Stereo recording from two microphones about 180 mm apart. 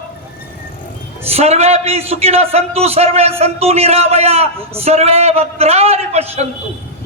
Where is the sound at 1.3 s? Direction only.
35° right (ahead or behind).